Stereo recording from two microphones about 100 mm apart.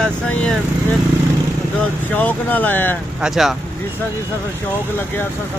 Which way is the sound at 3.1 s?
5° right (ahead or behind).